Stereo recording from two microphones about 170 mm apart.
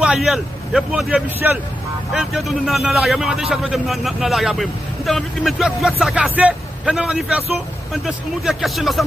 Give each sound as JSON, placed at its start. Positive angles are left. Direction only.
{"t": 0.0, "sound": "a man's voice", "side_deg": -5}